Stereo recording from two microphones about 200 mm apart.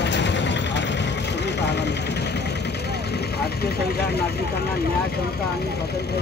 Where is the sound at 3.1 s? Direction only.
50° left (ahead or behind).